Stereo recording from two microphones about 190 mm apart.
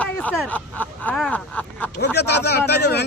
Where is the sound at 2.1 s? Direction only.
60° left (ahead or behind).